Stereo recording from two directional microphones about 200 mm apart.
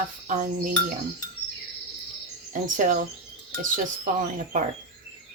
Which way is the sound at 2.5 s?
40° right (ahead or behind).